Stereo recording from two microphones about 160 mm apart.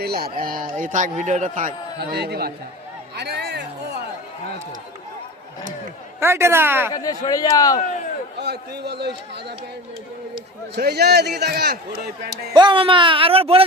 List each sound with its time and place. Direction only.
0.0 s a man's voice: 75° right (ahead or behind); by 1.7 s 50° right (ahead or behind)
2.0 s a man's voice: 90° right
3.2 s a sound: 90° right
6.1 s speech: 15° right (ahead or behind)
6.9 s a man's voice: 25° left (ahead or behind)
8.4 s a man's voice: 90° right
10.8 s a man's voice: 90° right
12.5 s a man's voice: 30° right (ahead or behind)